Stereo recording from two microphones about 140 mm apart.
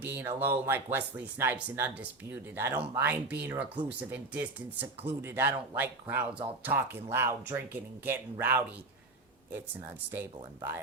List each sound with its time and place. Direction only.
0.0 s speech: 15° right (ahead or behind)